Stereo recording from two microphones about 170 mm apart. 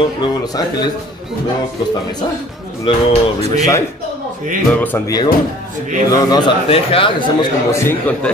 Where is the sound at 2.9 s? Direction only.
30° left (ahead or behind).